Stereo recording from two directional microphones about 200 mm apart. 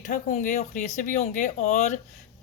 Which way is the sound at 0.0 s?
40° left (ahead or behind).